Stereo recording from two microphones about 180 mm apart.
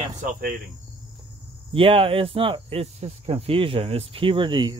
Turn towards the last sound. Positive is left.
turn(degrees=-25)  # may be behind; listen again after turning